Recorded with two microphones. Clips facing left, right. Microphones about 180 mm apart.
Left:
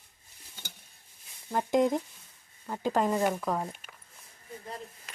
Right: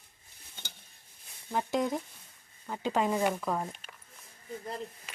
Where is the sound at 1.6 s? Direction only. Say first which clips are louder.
Left 5 dB; 15° left (ahead or behind).